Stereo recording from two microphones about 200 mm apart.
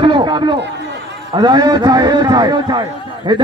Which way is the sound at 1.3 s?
20° right (ahead or behind).